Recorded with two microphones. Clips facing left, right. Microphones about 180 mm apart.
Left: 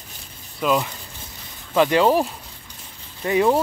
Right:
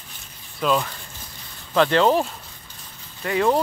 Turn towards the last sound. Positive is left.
turn(degrees=20)  # may be behind; listen again after turning